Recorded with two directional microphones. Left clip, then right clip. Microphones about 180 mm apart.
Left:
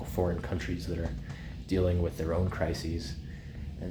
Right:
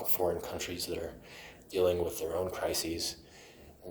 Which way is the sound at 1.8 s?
25° right (ahead or behind).